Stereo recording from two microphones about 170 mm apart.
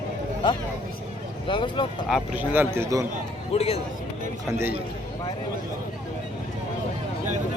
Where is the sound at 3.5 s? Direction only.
35° left (ahead or behind).